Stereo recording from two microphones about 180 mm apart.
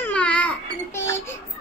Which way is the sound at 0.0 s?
5° left (ahead or behind).